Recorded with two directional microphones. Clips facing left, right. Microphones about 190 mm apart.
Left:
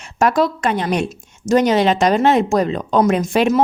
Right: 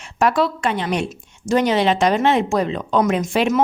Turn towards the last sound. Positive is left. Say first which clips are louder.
# left 3 dB
turn(degrees=40)  # may be behind; listen again after turning